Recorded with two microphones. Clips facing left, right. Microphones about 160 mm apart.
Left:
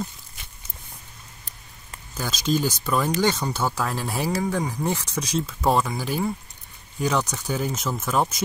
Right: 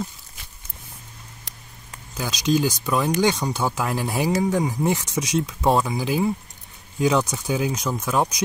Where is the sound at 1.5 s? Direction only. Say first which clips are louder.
Right 3 dB; 85° right.